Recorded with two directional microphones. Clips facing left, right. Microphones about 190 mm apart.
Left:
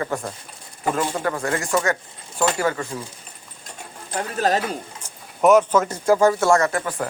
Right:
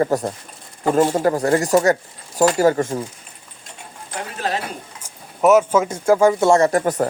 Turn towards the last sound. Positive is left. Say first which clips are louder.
# right 7 dB
turn(degrees=-40)  # may be behind; listen again after turning